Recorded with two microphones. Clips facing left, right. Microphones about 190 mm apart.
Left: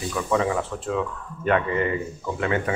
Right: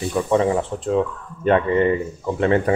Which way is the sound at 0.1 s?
30° right (ahead or behind).